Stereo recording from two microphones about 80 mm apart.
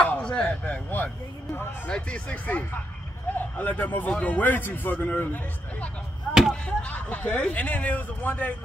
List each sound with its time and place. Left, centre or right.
0.0 s speech: centre
1.9 s a man's voice: centre